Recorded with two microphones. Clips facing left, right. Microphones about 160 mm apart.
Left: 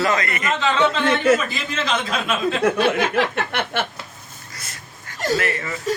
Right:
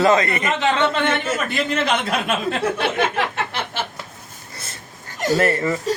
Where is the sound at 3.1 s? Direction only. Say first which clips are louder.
Left 3 dB; 60° left (ahead or behind).